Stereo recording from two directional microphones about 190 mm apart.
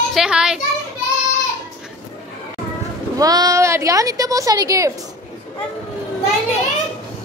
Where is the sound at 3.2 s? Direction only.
20° right (ahead or behind).